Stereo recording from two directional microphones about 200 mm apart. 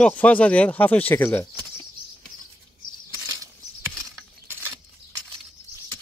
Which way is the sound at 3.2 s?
15° right (ahead or behind).